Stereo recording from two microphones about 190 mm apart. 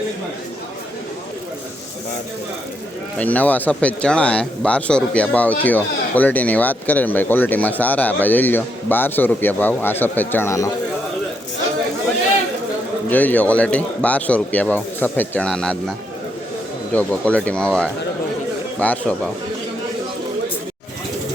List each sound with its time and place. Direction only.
3.2 s speech: 10° left (ahead or behind)
13.1 s speech: 10° left (ahead or behind)
16.9 s speech: 10° left (ahead or behind)